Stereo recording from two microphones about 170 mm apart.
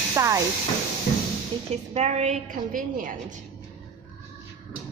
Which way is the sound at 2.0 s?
40° right (ahead or behind).